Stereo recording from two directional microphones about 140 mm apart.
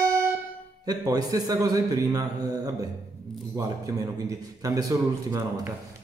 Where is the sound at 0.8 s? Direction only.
25° right (ahead or behind).